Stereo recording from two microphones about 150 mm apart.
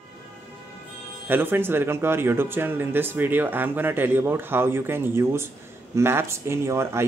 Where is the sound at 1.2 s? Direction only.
15° right (ahead or behind).